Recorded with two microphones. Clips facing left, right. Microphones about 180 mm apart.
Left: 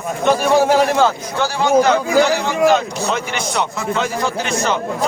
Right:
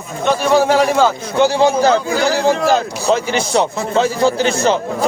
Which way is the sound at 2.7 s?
30° right (ahead or behind).